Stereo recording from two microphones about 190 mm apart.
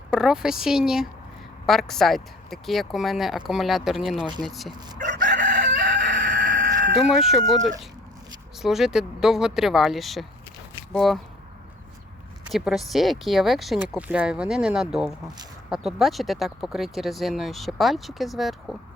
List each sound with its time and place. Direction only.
0.1 s speech: 5° right (ahead or behind)
4.9 s crowing: 45° right (ahead or behind)
6.9 s speech: centre (ahead or behind)
12.5 s speech: centre (ahead or behind)